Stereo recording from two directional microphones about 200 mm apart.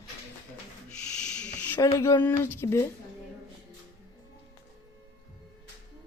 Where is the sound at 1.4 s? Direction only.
10° left (ahead or behind).